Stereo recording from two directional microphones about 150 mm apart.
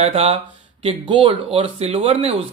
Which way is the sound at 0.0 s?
40° right (ahead or behind).